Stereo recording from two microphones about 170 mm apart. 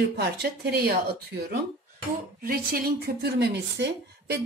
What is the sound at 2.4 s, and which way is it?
A woman's voice, 60° right (ahead or behind).